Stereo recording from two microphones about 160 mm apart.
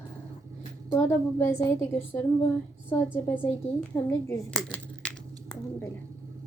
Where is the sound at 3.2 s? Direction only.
15° left (ahead or behind).